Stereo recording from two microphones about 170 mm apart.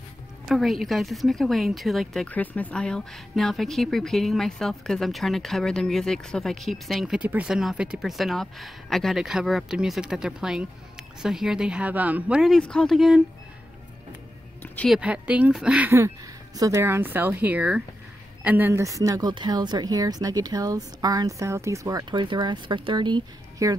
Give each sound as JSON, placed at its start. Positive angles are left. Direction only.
{"t": 0.5, "sound": "speech", "side_deg": 0}
{"t": 14.9, "sound": "a woman's voice", "side_deg": -5}
{"t": 16.5, "sound": "a woman's voice", "side_deg": -20}